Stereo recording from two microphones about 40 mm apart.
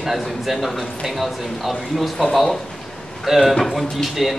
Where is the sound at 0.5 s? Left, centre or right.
Centre.